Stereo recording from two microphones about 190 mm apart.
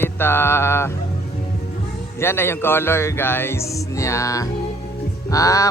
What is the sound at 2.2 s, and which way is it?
Music, 10° left (ahead or behind).